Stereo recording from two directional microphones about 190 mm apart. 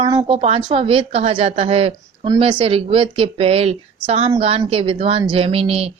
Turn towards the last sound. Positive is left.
turn(degrees=-30)  # may be behind; listen again after turning